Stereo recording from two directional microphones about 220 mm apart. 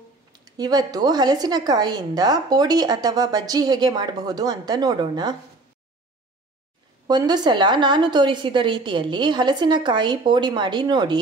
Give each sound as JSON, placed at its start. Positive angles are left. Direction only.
{"t": 0.5, "sound": "a woman's voice", "side_deg": -20}
{"t": 7.1, "sound": "a woman's voice", "side_deg": -20}